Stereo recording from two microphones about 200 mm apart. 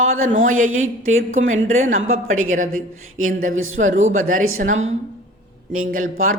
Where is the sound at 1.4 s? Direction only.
40° right (ahead or behind).